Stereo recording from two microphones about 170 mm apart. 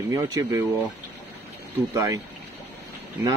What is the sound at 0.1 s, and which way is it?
Speech, 20° right (ahead or behind).